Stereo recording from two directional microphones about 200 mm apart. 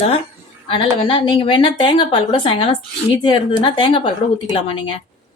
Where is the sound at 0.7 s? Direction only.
25° left (ahead or behind).